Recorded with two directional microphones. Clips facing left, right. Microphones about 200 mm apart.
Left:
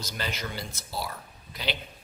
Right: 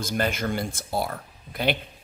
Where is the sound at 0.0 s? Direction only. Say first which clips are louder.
Right 9 dB; 50° right (ahead or behind).